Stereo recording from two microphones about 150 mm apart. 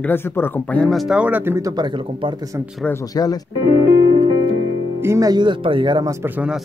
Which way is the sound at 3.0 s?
25° left (ahead or behind).